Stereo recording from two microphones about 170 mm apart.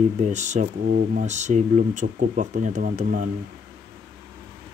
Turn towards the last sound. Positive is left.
turn(degrees=-50)  # may be behind; listen again after turning